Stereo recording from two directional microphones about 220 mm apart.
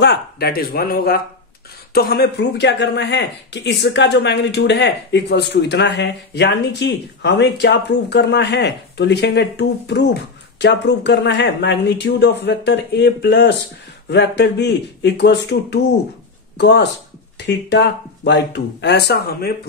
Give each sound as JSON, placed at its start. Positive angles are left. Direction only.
{"t": 0.0, "sound": "speech", "side_deg": 50}